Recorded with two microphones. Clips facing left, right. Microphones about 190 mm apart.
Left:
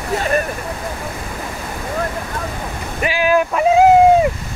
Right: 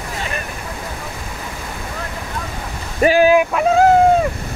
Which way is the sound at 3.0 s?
45° right (ahead or behind).